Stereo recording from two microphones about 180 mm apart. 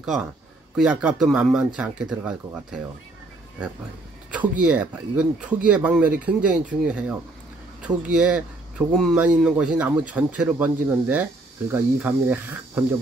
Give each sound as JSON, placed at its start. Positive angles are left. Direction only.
{"t": 0.0, "sound": "speech", "side_deg": 0}
{"t": 4.3, "sound": "speech", "side_deg": -5}